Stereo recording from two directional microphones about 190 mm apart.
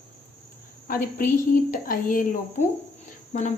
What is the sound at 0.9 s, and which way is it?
A woman's voice, 45° left (ahead or behind).